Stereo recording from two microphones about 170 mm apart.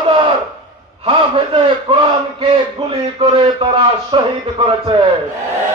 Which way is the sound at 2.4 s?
30° right (ahead or behind).